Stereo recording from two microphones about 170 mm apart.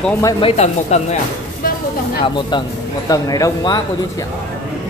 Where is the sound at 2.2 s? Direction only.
25° left (ahead or behind).